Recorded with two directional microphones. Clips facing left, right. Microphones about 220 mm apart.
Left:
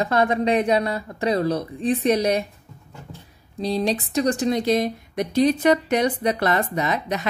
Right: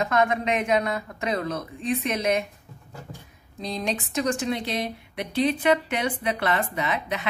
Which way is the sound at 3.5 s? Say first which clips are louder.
Left 6 dB; 35° left (ahead or behind).